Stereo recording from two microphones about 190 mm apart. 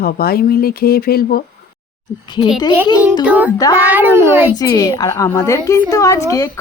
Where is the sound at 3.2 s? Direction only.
10° right (ahead or behind).